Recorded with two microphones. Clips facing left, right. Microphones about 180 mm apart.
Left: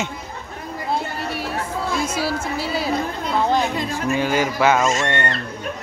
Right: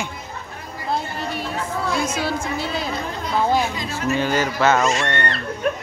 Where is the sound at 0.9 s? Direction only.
5° left (ahead or behind).